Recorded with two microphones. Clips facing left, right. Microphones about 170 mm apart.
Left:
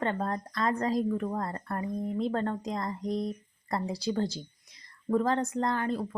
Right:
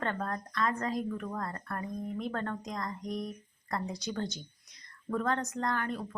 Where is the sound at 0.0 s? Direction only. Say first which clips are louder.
Left 4 dB; 25° left (ahead or behind).